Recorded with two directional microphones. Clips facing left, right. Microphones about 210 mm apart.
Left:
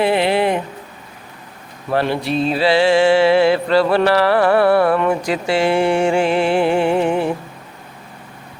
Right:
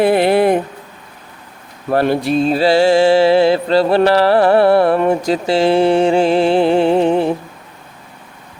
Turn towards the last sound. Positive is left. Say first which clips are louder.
# right 4 dB
turn(degrees=-35)  # may be behind; listen again after turning